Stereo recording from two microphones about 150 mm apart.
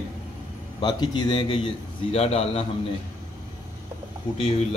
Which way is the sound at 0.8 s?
30° left (ahead or behind).